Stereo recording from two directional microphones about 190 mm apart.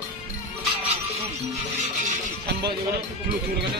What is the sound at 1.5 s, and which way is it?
Music, 40° right (ahead or behind).